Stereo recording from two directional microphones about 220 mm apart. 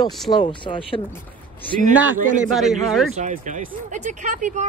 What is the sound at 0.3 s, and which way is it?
Speech, 20° left (ahead or behind).